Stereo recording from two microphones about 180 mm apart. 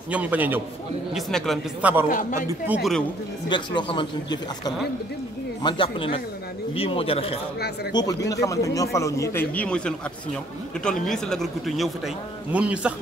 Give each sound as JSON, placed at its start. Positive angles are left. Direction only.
{"t": 0.1, "sound": "a man's voice", "side_deg": -10}
{"t": 1.1, "sound": "a man's voice", "side_deg": 0}
{"t": 2.0, "sound": "a man's voice", "side_deg": 45}
{"t": 2.6, "sound": "a man's voice", "side_deg": -10}
{"t": 3.4, "sound": "speech", "side_deg": 25}
{"t": 7.9, "sound": "a man's voice", "side_deg": 20}